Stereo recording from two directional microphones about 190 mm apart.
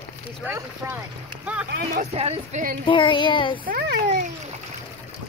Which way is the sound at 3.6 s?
55° right (ahead or behind).